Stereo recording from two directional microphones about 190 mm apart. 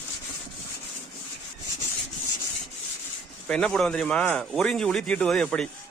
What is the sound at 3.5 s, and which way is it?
Speech, 5° left (ahead or behind).